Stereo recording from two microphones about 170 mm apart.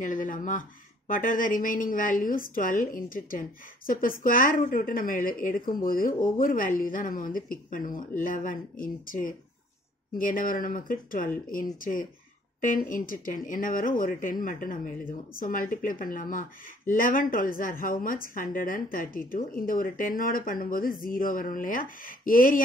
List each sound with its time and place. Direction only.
0.0 s speech: 50° left (ahead or behind)